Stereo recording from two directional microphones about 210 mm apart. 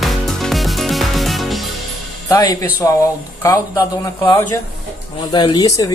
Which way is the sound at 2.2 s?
15° left (ahead or behind).